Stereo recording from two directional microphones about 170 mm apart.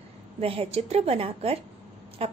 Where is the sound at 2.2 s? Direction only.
35° right (ahead or behind).